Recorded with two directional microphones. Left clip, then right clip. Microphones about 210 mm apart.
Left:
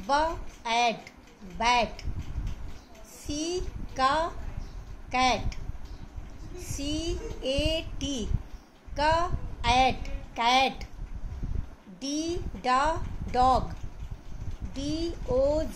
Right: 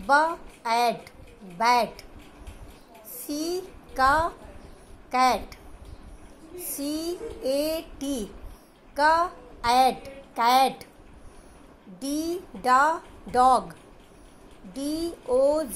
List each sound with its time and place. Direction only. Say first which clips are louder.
0.0 s speech: right 5 dB; 10° right (ahead or behind)
3.3 s a woman's voice: right 2 dB; 10° right (ahead or behind)
6.6 s a woman's voice: right 2 dB; 10° right (ahead or behind)
12.0 s speech: right 2 dB; 10° right (ahead or behind)
14.7 s speech: right 2 dB; 10° right (ahead or behind)